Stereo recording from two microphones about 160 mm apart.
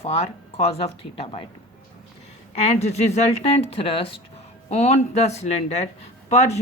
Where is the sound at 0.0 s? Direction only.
40° left (ahead or behind).